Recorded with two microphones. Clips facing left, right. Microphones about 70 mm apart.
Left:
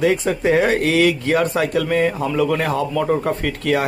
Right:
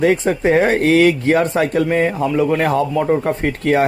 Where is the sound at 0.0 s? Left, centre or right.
Right.